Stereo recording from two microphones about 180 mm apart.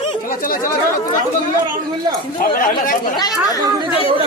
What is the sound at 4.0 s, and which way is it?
Speech, 30° left (ahead or behind).